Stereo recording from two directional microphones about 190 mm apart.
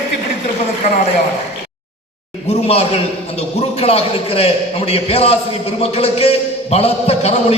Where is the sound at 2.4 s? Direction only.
35° left (ahead or behind).